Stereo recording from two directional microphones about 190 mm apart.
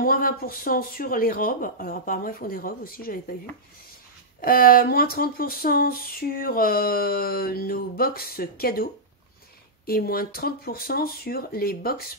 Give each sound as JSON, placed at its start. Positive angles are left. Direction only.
{"t": 0.0, "sound": "speech", "side_deg": 50}
{"t": 4.4, "sound": "speech", "side_deg": 50}
{"t": 9.8, "sound": "speech", "side_deg": 50}